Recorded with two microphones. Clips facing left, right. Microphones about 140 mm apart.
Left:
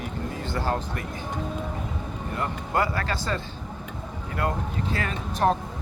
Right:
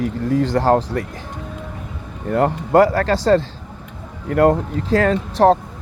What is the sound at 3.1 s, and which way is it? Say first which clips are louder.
Speech: right 14 dB; 90° right.